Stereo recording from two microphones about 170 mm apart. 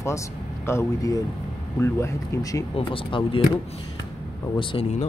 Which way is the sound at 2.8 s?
30° left (ahead or behind).